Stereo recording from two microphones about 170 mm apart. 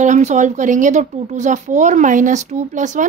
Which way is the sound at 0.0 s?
45° right (ahead or behind).